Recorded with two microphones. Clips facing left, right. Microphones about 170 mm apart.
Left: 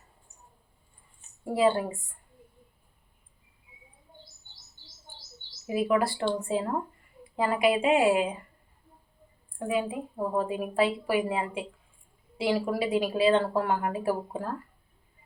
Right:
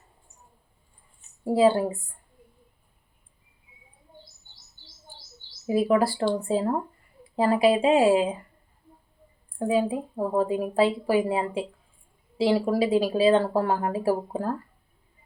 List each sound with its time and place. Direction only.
1.5 s speech: 30° right (ahead or behind)
5.6 s speech: 35° right (ahead or behind)
7.3 s speech: 30° right (ahead or behind)
9.6 s speech: 30° right (ahead or behind)